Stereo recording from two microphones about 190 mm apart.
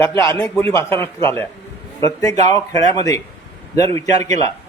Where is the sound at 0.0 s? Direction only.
15° left (ahead or behind).